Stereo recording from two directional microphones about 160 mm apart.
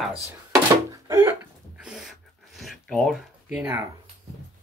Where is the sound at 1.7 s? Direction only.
5° right (ahead or behind).